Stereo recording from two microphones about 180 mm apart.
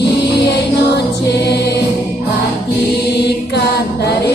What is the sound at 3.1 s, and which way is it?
Mantra, 70° left (ahead or behind).